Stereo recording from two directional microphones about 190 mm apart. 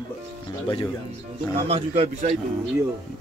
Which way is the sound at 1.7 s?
35° right (ahead or behind).